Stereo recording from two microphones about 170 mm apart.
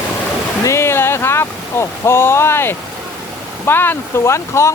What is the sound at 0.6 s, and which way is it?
Speech, 15° left (ahead or behind).